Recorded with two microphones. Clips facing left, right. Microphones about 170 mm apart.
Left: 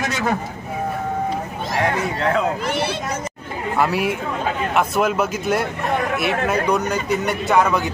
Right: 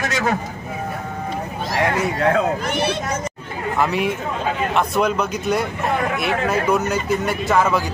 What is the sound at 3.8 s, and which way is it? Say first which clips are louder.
A man's voice: left 1 dB; 5° left (ahead or behind).